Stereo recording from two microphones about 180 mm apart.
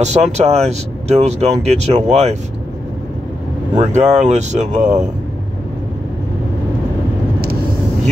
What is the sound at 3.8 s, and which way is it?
Speech, 40° right (ahead or behind).